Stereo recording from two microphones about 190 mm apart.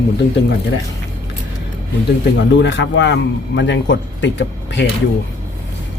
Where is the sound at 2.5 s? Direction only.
70° left (ahead or behind).